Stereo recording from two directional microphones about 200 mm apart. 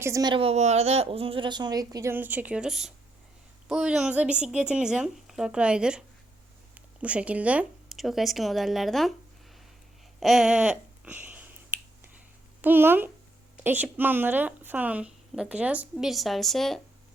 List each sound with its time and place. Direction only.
0.0 s a woman's voice: 20° right (ahead or behind); by 9.1 s centre (ahead or behind)
10.2 s speech: centre (ahead or behind)
12.6 s speech: 10° right (ahead or behind)